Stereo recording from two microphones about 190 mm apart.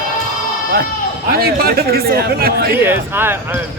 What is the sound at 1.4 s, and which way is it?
Speech, 55° right (ahead or behind).